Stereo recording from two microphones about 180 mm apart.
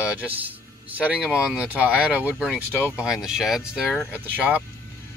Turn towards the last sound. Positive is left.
turn(degrees=-5)  # may be behind; listen again after turning